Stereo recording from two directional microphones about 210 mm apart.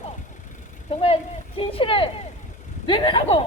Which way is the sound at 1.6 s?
25° left (ahead or behind).